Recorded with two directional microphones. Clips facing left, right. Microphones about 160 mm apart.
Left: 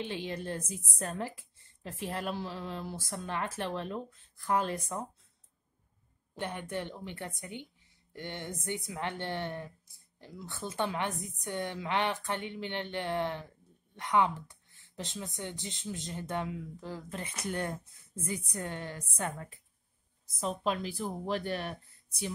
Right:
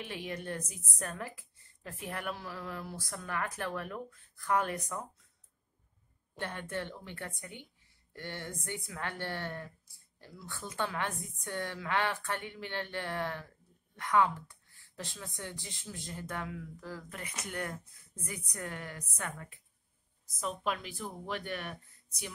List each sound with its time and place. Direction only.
0.0 s a woman's voice: 30° left (ahead or behind)
6.3 s a woman's voice: 15° left (ahead or behind)